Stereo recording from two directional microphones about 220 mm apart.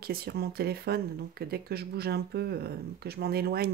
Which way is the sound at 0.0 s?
45° right (ahead or behind).